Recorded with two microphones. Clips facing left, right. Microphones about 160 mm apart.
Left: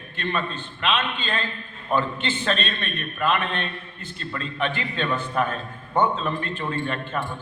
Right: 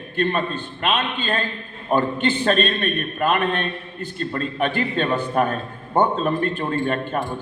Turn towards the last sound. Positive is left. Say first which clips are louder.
# right 5 dB
turn(degrees=-40)  # may be behind; listen again after turning